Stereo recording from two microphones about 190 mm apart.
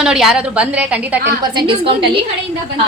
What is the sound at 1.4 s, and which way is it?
Speech, 25° right (ahead or behind).